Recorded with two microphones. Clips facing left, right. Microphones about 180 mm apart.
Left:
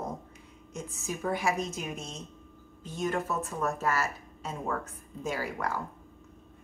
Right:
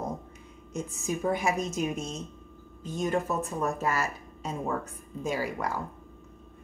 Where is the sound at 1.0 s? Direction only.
15° right (ahead or behind).